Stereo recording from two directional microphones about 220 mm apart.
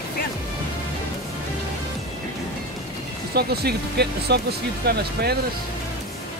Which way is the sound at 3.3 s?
45° right (ahead or behind).